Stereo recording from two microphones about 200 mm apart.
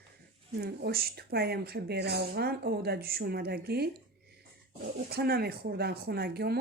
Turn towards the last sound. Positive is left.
turn(degrees=-55)  # may be behind; listen again after turning